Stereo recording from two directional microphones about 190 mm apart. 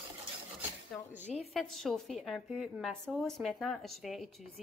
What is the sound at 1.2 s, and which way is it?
Speech, 35° left (ahead or behind).